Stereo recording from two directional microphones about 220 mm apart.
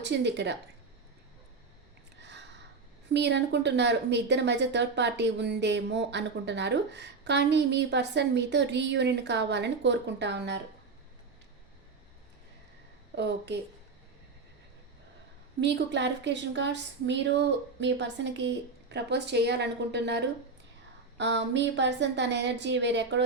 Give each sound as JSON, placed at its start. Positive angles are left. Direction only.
{"t": 0.0, "sound": "a woman's voice", "side_deg": -50}
{"t": 3.1, "sound": "a woman's voice", "side_deg": -50}
{"t": 13.1, "sound": "a woman's voice", "side_deg": -50}
{"t": 15.6, "sound": "a woman's voice", "side_deg": -50}